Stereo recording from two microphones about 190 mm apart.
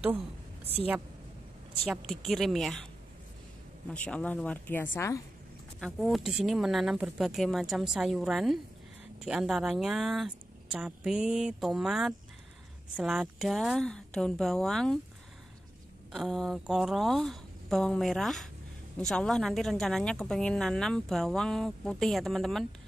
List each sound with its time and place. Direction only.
1.9 s a woman's voice: centre (ahead or behind)
3.9 s speech: 5° left (ahead or behind)
5.8 s a woman's voice: centre (ahead or behind)
16.1 s a woman's voice: centre (ahead or behind)